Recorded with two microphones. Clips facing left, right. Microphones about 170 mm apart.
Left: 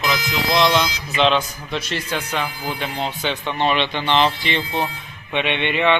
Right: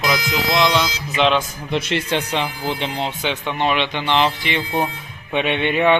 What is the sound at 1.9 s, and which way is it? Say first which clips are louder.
Speech: right 5 dB; 65° right (ahead or behind).